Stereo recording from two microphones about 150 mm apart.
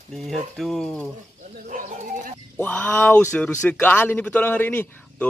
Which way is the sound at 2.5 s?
10° left (ahead or behind).